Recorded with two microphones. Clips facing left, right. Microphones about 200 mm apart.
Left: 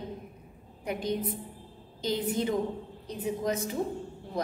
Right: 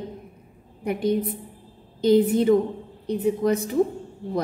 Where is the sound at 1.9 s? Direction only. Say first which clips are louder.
Right 12 dB; 60° right (ahead or behind).